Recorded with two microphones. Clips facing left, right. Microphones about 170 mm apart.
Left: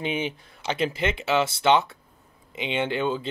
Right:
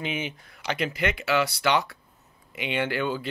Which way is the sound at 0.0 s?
30° left (ahead or behind).